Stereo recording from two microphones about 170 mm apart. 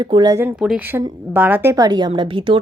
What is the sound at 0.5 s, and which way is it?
A woman's voice, 5° right (ahead or behind).